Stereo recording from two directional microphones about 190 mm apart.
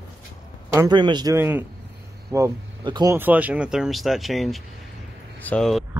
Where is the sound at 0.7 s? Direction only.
20° right (ahead or behind); by 5.8 s 5° left (ahead or behind).